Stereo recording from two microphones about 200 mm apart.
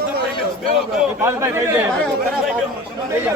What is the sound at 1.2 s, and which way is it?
Speech, 10° right (ahead or behind).